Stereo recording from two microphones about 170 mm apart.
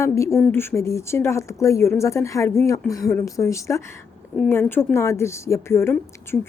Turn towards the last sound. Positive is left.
turn(degrees=15)  # may be behind; listen again after turning